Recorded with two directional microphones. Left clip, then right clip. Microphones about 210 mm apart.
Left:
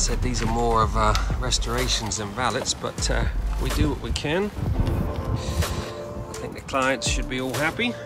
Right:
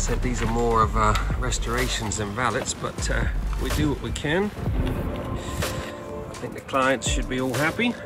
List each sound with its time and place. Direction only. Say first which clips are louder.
0.6 s speech: even; 15° left (ahead or behind)
6.7 s speech: right 1 dB; 5° left (ahead or behind)